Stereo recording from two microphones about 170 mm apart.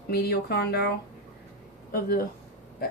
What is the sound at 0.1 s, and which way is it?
Speech, 70° left (ahead or behind).